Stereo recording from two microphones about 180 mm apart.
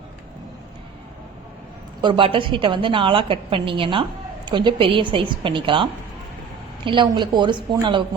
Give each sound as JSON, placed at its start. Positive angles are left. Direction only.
{"t": 2.0, "sound": "a woman's voice", "side_deg": -25}